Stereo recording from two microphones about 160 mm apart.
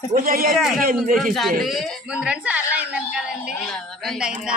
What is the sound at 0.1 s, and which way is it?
Speech, 60° right (ahead or behind).